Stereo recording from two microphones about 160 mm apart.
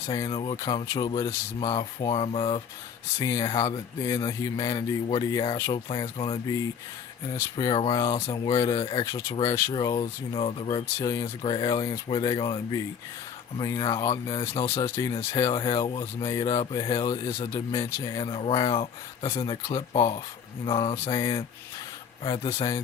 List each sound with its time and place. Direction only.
0.3 s speech: 30° left (ahead or behind)
3.2 s speech: 20° left (ahead or behind)
3.4 s speech: 35° left (ahead or behind)
4.0 s speech: 20° left (ahead or behind)
5.7 s speech: 35° left (ahead or behind)
14.4 s speech: 20° left (ahead or behind); by 21.1 s 35° left (ahead or behind)
21.1 s speech: 20° left (ahead or behind)
22.2 s speech: 35° left (ahead or behind)